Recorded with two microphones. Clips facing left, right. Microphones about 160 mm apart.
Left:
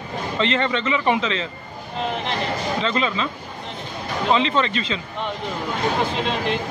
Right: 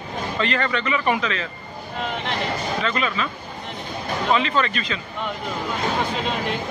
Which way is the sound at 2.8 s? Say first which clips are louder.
Left 3 dB; 25° left (ahead or behind).